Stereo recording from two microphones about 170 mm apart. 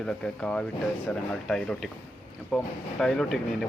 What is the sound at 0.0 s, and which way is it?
Speech, 5° left (ahead or behind).